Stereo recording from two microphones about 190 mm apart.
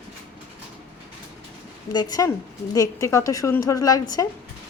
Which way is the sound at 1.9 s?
20° left (ahead or behind).